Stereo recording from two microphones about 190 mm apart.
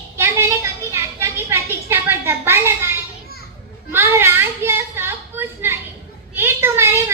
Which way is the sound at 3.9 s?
15° right (ahead or behind).